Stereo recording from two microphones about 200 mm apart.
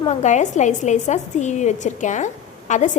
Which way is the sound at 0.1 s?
35° left (ahead or behind).